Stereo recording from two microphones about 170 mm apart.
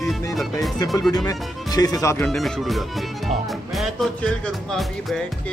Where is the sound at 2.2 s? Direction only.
Centre (ahead or behind).